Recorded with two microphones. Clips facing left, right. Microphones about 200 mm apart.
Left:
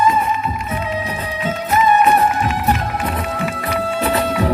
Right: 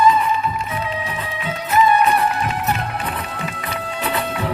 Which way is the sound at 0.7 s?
40° left (ahead or behind).